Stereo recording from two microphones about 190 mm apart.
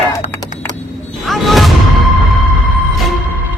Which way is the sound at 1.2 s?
Centre (ahead or behind).